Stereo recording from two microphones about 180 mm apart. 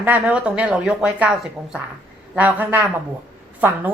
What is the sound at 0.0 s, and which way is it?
Speech, 10° right (ahead or behind).